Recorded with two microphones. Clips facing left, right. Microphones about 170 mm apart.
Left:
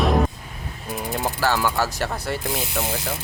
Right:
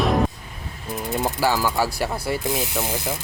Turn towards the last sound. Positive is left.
turn(degrees=-10)  # may be behind; listen again after turning